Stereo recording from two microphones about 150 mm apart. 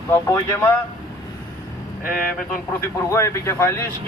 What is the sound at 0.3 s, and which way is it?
Speech, 15° left (ahead or behind).